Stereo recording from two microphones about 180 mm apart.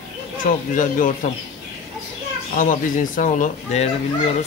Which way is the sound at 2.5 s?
45° left (ahead or behind).